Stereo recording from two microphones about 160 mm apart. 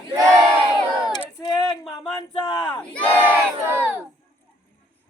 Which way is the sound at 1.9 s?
25° left (ahead or behind).